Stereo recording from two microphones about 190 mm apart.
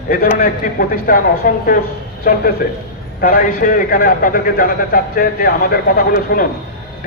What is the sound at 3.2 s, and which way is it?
A man's voice, 50° left (ahead or behind).